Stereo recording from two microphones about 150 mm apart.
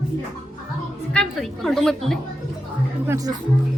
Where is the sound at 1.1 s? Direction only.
5° left (ahead or behind).